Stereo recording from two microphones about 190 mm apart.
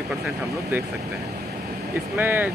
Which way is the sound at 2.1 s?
10° right (ahead or behind).